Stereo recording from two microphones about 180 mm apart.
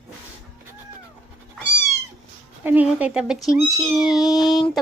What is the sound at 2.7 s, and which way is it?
Child singing, 10° right (ahead or behind).